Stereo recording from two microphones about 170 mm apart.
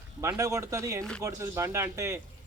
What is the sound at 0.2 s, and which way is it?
A man's voice, 15° right (ahead or behind).